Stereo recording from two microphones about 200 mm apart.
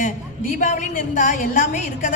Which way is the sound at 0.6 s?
40° left (ahead or behind).